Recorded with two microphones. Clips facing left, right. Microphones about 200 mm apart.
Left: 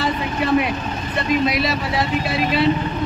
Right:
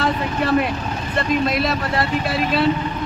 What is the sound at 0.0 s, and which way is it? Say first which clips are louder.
A man's voice: right 1 dB; centre (ahead or behind).